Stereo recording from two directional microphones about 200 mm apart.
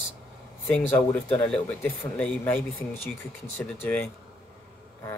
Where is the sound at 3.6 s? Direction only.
5° left (ahead or behind).